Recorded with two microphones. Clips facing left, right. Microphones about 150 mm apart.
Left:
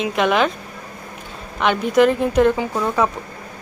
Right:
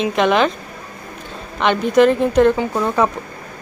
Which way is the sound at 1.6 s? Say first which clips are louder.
Right 2 dB; 5° left (ahead or behind).